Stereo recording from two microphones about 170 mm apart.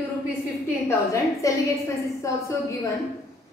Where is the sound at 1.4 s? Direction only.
20° left (ahead or behind).